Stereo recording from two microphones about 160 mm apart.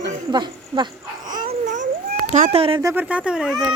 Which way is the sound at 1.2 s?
55° right (ahead or behind).